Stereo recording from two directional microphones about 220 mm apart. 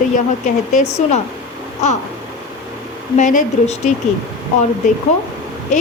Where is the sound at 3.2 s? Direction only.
35° left (ahead or behind).